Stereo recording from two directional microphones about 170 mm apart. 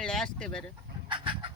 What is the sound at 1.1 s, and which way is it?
Chicken, 30° right (ahead or behind).